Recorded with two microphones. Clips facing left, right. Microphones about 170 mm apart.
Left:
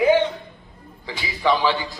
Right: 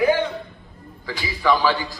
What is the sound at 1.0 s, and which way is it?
Speech, 20° left (ahead or behind).